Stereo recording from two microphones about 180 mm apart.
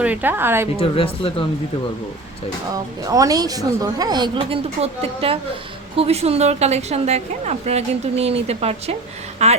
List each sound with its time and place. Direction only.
0.0 s a woman's voice: 10° right (ahead or behind)
0.8 s speech: 30° left (ahead or behind)
2.7 s a woman's voice: 20° right (ahead or behind); by 9.5 s 35° right (ahead or behind)